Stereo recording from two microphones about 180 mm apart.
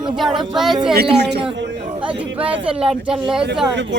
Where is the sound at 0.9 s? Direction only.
65° right (ahead or behind).